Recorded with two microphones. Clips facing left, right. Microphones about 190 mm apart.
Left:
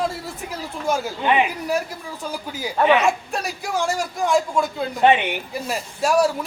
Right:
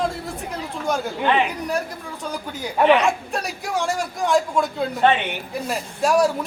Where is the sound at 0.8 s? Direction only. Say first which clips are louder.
Left 1 dB; 5° left (ahead or behind).